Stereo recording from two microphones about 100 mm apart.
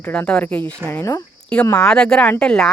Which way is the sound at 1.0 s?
30° left (ahead or behind).